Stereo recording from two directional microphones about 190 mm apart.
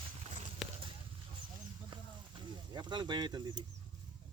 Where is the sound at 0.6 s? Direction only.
Centre (ahead or behind).